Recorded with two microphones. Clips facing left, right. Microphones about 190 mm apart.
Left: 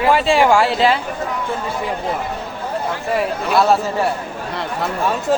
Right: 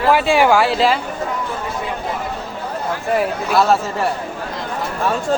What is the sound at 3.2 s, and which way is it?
Speech, centre (ahead or behind).